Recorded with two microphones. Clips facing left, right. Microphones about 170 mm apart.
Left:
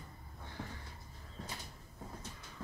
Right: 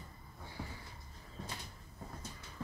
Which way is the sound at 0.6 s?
10° right (ahead or behind).